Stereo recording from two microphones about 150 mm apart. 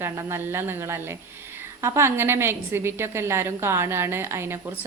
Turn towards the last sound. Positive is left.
turn(degrees=-15)  # may be behind; listen again after turning